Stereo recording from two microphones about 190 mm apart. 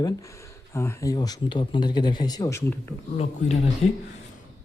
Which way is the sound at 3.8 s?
30° left (ahead or behind).